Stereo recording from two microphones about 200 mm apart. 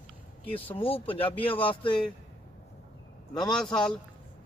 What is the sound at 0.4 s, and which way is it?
Speech, 25° left (ahead or behind).